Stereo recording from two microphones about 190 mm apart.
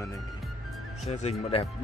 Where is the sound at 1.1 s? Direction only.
30° left (ahead or behind).